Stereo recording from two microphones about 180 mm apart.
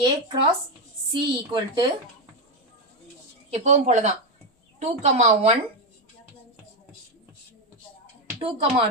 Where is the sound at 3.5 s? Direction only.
40° right (ahead or behind).